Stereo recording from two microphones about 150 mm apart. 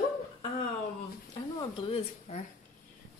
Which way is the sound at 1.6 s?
35° left (ahead or behind).